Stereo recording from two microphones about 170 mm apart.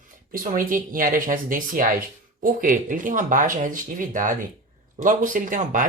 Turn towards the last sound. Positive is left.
turn(degrees=-50)  # may be behind; listen again after turning